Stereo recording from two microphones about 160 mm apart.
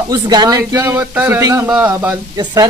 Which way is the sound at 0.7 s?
15° right (ahead or behind).